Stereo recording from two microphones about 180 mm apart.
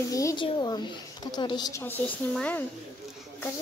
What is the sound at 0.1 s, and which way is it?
A woman's voice, 20° left (ahead or behind).